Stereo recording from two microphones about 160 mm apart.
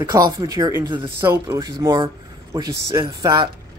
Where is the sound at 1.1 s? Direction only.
15° right (ahead or behind).